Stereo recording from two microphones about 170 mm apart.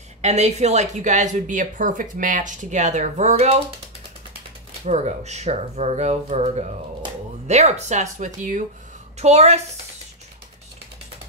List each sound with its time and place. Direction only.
0.2 s speech: 40° right (ahead or behind)
4.8 s speech: 40° right (ahead or behind)